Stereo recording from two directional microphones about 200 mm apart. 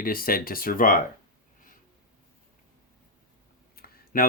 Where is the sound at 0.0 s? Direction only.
45° left (ahead or behind).